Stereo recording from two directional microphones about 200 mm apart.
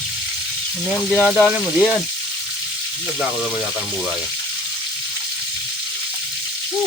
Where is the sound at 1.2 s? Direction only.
5° right (ahead or behind).